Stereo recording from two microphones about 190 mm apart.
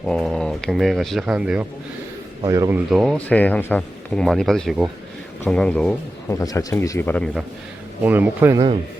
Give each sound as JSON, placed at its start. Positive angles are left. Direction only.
{"t": 0.0, "sound": "speech", "side_deg": 0}
{"t": 2.4, "sound": "speech", "side_deg": -20}
{"t": 3.2, "sound": "speech", "side_deg": 10}
{"t": 6.4, "sound": "speech", "side_deg": 20}
{"t": 8.0, "sound": "speech", "side_deg": -10}